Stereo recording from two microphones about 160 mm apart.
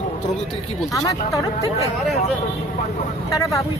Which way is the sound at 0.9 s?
20° left (ahead or behind).